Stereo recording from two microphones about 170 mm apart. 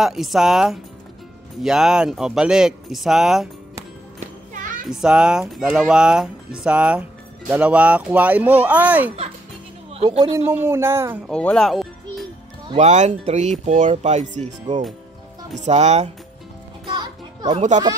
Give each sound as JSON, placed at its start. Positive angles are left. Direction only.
{"t": 0.0, "sound": "speech", "side_deg": 0}
{"t": 4.2, "sound": "music", "side_deg": -50}
{"t": 4.8, "sound": "speech", "side_deg": -5}
{"t": 9.9, "sound": "speech", "side_deg": -35}
{"t": 10.3, "sound": "speech", "side_deg": -15}
{"t": 11.2, "sound": "speech", "side_deg": 5}
{"t": 12.7, "sound": "speech", "side_deg": -45}
{"t": 16.8, "sound": "music", "side_deg": -25}
{"t": 17.5, "sound": "speech", "side_deg": -45}